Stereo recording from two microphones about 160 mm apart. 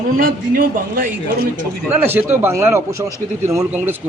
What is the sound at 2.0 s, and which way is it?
Speech, 15° right (ahead or behind).